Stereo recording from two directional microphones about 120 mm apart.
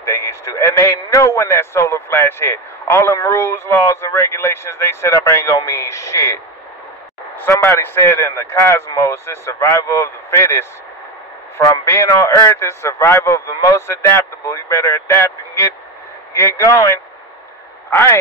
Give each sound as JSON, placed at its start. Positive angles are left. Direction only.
{"t": 0.0, "sound": "a man's voice", "side_deg": 25}
{"t": 11.7, "sound": "a man's voice", "side_deg": 25}